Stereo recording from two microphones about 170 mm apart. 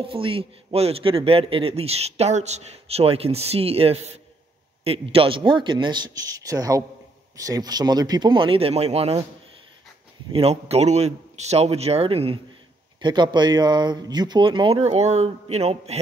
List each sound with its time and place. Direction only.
0.0 s a man's voice: 30° right (ahead or behind)
10.3 s a man's voice: 35° right (ahead or behind)